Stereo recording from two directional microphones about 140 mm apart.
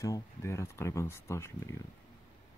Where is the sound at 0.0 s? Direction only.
20° left (ahead or behind).